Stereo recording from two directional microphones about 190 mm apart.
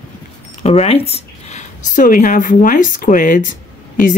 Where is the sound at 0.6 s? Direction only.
35° left (ahead or behind).